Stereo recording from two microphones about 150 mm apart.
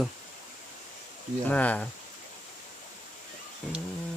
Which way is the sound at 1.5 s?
10° left (ahead or behind).